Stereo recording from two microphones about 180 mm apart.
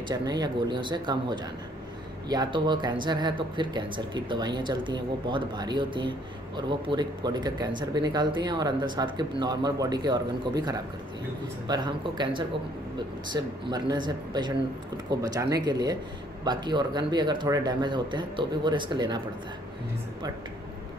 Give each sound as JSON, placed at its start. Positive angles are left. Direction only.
{"t": 0.1, "sound": "speech", "side_deg": -20}